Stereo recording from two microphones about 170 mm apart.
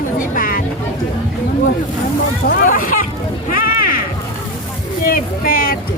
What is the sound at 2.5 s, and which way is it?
Speech, 55° left (ahead or behind).